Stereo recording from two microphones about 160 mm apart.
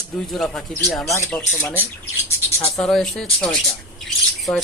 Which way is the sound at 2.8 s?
5° left (ahead or behind).